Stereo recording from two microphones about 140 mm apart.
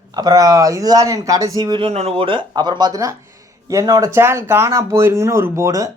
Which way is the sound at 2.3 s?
35° right (ahead or behind).